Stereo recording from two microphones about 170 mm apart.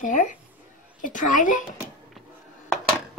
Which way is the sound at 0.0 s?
50° left (ahead or behind).